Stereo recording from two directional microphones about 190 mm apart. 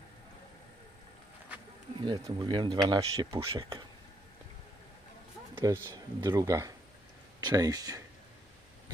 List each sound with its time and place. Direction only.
2.0 s speech: 25° right (ahead or behind)
5.7 s speech: 20° right (ahead or behind)